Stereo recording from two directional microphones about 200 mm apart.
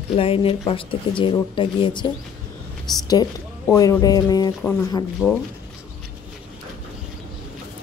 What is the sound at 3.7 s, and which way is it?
Speech, 15° left (ahead or behind).